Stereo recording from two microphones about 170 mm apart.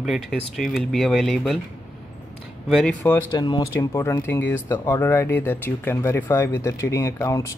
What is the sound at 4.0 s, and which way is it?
Speech, 15° left (ahead or behind).